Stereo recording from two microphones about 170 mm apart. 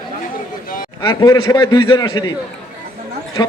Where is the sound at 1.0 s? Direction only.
25° left (ahead or behind).